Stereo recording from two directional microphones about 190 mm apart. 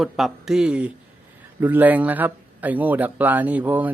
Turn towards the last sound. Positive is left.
turn(degrees=-10)  # may be behind; listen again after turning